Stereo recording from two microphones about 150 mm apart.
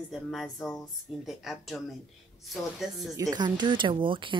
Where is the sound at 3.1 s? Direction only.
25° right (ahead or behind).